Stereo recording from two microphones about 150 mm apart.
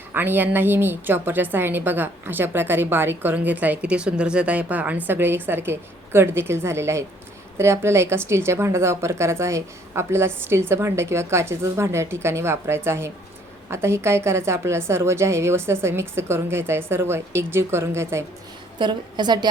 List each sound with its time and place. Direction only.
0.1 s a woman's voice: 15° right (ahead or behind)
18.8 s a woman's voice: 30° right (ahead or behind)